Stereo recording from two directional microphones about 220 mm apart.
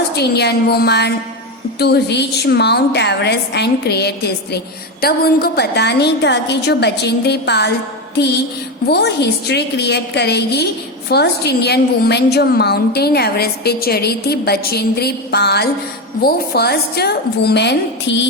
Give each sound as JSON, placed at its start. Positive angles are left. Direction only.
{"t": 0.2, "sound": "a woman's voice", "side_deg": 50}